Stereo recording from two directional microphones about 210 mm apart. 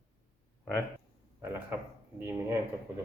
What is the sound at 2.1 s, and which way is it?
Speech, 10° right (ahead or behind).